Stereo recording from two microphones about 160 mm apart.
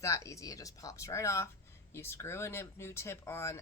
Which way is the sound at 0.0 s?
20° left (ahead or behind).